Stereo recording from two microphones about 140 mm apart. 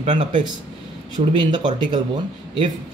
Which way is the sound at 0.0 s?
50° right (ahead or behind).